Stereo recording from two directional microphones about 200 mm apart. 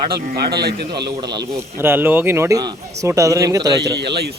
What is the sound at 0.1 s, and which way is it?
Speech, 55° right (ahead or behind).